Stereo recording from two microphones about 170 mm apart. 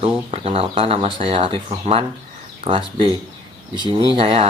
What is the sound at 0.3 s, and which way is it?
Speech, 35° right (ahead or behind).